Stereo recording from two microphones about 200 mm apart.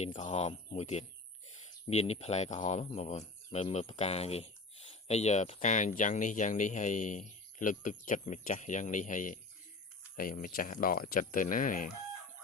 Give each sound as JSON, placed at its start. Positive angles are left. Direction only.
{"t": 0.0, "sound": "speech", "side_deg": 30}